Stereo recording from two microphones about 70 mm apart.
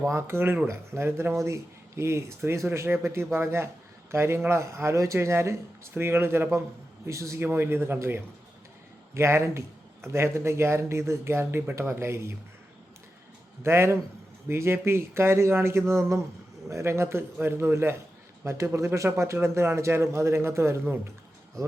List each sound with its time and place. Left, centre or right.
0.1 s a man's voice: right
13.6 s a man's voice: right